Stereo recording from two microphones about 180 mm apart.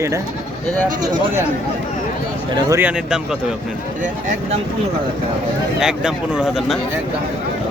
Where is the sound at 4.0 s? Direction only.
45° right (ahead or behind).